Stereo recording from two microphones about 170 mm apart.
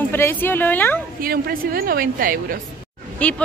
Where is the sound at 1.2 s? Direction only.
60° right (ahead or behind).